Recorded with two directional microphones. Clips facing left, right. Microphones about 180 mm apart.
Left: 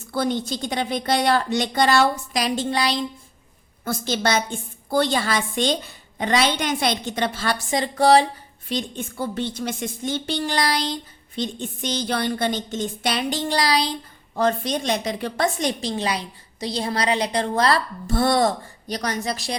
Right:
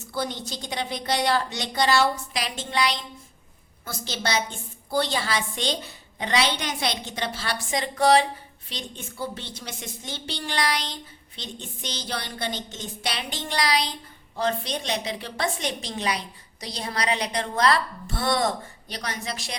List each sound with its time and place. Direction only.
0.1 s a woman's voice: 55° left (ahead or behind); by 3.0 s 35° left (ahead or behind)
3.8 s a woman's voice: 50° left (ahead or behind)
7.7 s a woman's voice: 35° left (ahead or behind)
8.7 s a woman's voice: 50° left (ahead or behind); by 10.9 s 35° left (ahead or behind)
11.3 s a woman's voice: 50° left (ahead or behind); by 13.9 s 35° left (ahead or behind)
14.3 s a woman's voice: 45° left (ahead or behind)
15.8 s a woman's voice: 30° left (ahead or behind)